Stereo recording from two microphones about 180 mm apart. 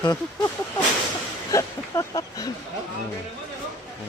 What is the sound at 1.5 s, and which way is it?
Speech, 20° left (ahead or behind).